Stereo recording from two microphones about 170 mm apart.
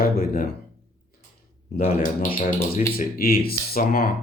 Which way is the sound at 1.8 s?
50° left (ahead or behind).